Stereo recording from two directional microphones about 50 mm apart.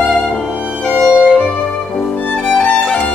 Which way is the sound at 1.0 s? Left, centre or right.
Left.